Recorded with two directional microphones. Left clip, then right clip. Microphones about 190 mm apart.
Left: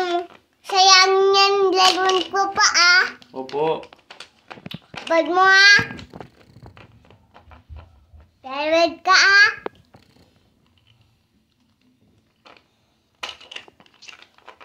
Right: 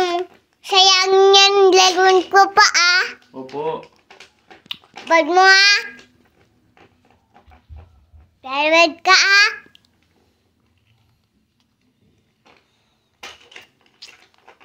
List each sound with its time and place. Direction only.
0.0 s child singing: 10° right (ahead or behind); by 3.1 s 30° right (ahead or behind)
3.3 s speech: 5° left (ahead or behind)
4.6 s a child's voice: 10° right (ahead or behind)
8.4 s a child's voice: 15° right (ahead or behind)